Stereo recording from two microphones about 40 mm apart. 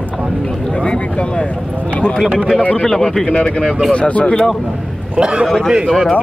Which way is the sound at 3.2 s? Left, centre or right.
Left.